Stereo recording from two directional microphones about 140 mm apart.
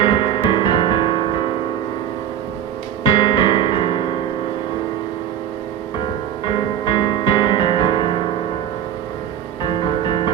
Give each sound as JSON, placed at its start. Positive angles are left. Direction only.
{"t": 0.0, "sound": "music", "side_deg": 35}
{"t": 3.0, "sound": "music", "side_deg": 35}
{"t": 6.5, "sound": "music", "side_deg": 35}
{"t": 9.6, "sound": "music", "side_deg": 40}